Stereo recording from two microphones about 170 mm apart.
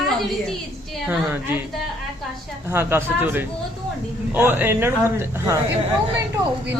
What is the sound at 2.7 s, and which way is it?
A man's voice, 15° right (ahead or behind).